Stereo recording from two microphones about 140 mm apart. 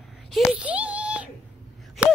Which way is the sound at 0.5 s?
10° right (ahead or behind).